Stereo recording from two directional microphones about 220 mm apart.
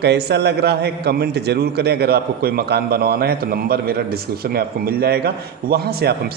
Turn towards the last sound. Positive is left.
turn(degrees=-45)  # may be behind; listen again after turning